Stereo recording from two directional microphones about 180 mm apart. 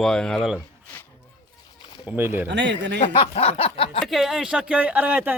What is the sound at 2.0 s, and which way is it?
Speech, 10° right (ahead or behind).